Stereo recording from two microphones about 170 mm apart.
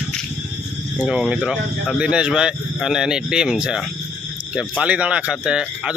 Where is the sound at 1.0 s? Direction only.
5° right (ahead or behind).